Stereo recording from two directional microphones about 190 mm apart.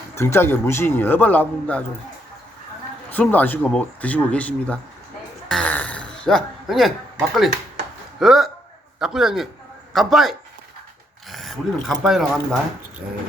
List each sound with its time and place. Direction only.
0.2 s speech: 15° left (ahead or behind)
3.1 s speech: 10° left (ahead or behind)
5.5 s a sound: 5° left (ahead or behind)
8.2 s a man's voice: centre (ahead or behind)